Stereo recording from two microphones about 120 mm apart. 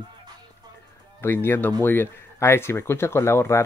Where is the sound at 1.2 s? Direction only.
20° left (ahead or behind).